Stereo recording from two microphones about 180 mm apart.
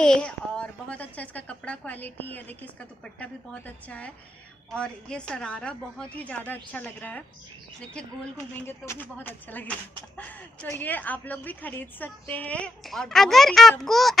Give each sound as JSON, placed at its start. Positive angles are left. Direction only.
{"t": 0.0, "sound": "speech", "side_deg": 5}
{"t": 8.5, "sound": "speech", "side_deg": 10}